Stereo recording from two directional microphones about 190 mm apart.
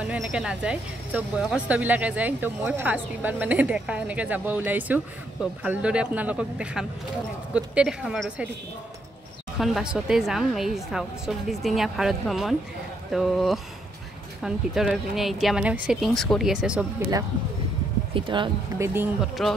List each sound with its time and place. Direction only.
0.0 s a woman's voice: 5° right (ahead or behind)
9.6 s a woman's voice: centre (ahead or behind)
18.1 s speech: 25° right (ahead or behind)
19.4 s a woman's voice: centre (ahead or behind)